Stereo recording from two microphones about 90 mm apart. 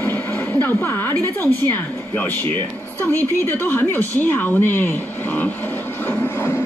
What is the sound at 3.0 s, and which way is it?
Speech, 25° left (ahead or behind).